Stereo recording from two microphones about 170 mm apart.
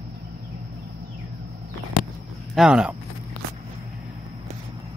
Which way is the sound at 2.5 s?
5° right (ahead or behind).